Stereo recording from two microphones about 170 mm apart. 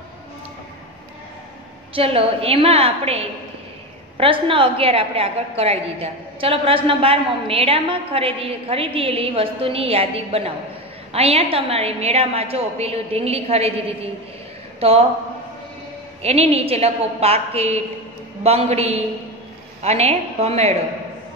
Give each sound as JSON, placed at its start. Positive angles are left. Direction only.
{"t": 2.0, "sound": "a woman's voice", "side_deg": -35}
{"t": 16.2, "sound": "a woman's voice", "side_deg": -40}